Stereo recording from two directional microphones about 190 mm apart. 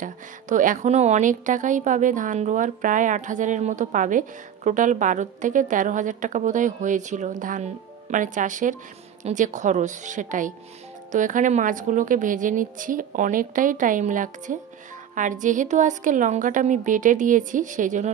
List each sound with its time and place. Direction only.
0.0 s a woman's voice: 45° right (ahead or behind)